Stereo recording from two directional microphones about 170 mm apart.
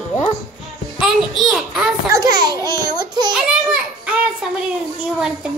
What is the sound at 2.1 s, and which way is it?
A child's voice, 20° right (ahead or behind).